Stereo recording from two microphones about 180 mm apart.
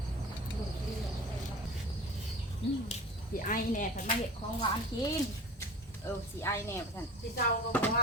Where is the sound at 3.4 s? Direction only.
50° left (ahead or behind).